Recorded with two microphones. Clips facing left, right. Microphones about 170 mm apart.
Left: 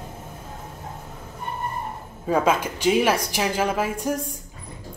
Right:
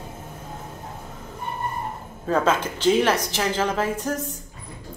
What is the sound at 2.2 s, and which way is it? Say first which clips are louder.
A woman's voice: left 1 dB; 10° left (ahead or behind).